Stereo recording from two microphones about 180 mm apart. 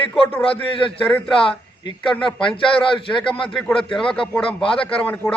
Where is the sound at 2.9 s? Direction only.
30° left (ahead or behind).